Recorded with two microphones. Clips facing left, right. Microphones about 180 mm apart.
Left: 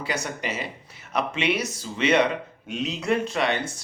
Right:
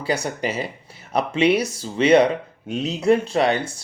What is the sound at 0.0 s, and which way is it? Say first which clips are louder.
Speech: right 6 dB; 35° right (ahead or behind).